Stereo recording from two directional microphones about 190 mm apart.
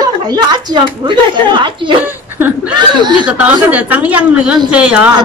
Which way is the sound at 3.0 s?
25° right (ahead or behind).